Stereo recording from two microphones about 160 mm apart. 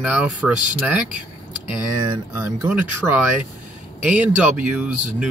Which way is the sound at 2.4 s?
15° right (ahead or behind).